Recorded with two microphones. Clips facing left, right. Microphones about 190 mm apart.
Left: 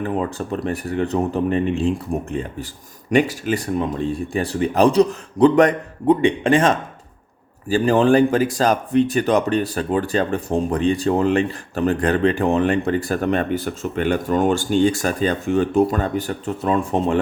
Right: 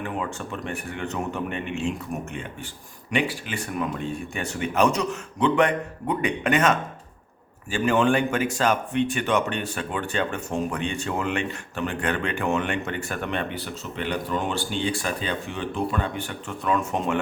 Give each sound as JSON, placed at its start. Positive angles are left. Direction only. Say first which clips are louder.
{"t": 0.0, "sound": "speech", "louder": "left 7 dB", "side_deg": 35}